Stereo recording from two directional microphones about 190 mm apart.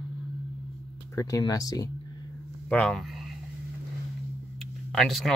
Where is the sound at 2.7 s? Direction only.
5° left (ahead or behind).